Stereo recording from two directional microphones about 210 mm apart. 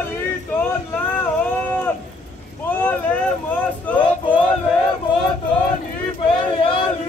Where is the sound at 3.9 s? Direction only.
5° left (ahead or behind).